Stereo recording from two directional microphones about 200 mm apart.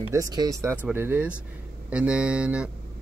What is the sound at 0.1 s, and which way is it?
Speech, 20° right (ahead or behind).